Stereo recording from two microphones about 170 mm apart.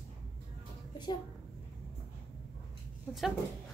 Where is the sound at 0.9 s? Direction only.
25° left (ahead or behind).